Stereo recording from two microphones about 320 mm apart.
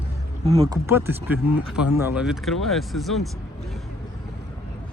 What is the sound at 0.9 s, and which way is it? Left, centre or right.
Speech, centre.